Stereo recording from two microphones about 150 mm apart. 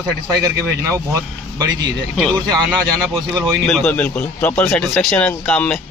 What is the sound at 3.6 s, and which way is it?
A man's voice, 5° left (ahead or behind).